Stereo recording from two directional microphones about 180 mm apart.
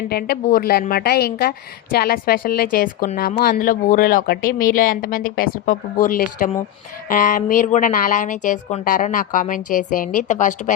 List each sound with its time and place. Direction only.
0.1 s a woman's voice: 60° left (ahead or behind)